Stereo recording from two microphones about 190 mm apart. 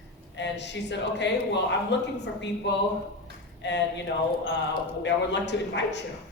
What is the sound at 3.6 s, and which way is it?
Speech, 65° left (ahead or behind).